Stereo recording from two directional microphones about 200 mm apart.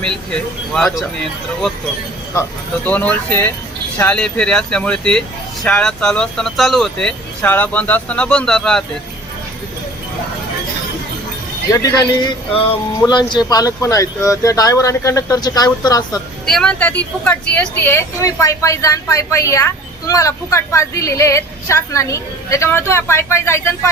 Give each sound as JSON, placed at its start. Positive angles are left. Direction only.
{"t": 0.0, "sound": "speech", "side_deg": 5}
{"t": 2.8, "sound": "a woman's voice", "side_deg": 10}
{"t": 11.7, "sound": "a woman's voice", "side_deg": 15}
{"t": 13.1, "sound": "a woman's voice", "side_deg": 20}
{"t": 16.5, "sound": "a woman's voice", "side_deg": 5}